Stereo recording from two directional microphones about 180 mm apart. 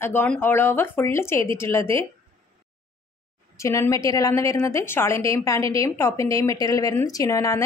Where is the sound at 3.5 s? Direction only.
15° left (ahead or behind).